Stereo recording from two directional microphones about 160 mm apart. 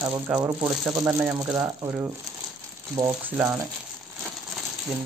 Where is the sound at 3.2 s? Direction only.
15° right (ahead or behind).